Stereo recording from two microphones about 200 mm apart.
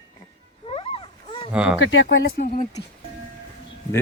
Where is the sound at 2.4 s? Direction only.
35° left (ahead or behind).